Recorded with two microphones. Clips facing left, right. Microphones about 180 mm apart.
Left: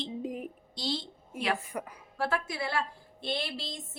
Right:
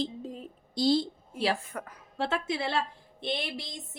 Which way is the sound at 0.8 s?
40° right (ahead or behind).